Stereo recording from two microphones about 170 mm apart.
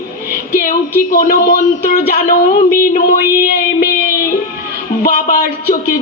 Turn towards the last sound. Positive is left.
turn(degrees=60)  # may be behind; listen again after turning